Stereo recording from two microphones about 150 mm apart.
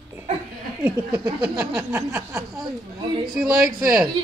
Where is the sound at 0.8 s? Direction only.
5° right (ahead or behind).